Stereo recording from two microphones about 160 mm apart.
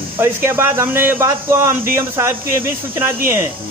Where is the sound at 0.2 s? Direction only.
15° right (ahead or behind).